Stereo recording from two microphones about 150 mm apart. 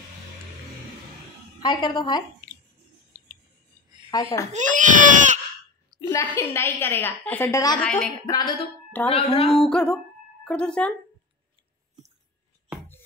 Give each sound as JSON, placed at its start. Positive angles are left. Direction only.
{"t": 1.6, "sound": "a woman's voice", "side_deg": 30}
{"t": 4.1, "sound": "a woman's voice", "side_deg": 25}
{"t": 4.5, "sound": "speech", "side_deg": -55}
{"t": 6.0, "sound": "a woman's voice", "side_deg": 15}
{"t": 8.3, "sound": "a woman's voice", "side_deg": 25}
{"t": 9.1, "sound": "speech", "side_deg": 45}
{"t": 9.5, "sound": "music", "side_deg": 5}
{"t": 10.4, "sound": "a woman's voice", "side_deg": 5}